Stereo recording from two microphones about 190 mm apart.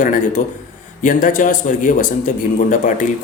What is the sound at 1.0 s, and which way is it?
Speech, 45° left (ahead or behind).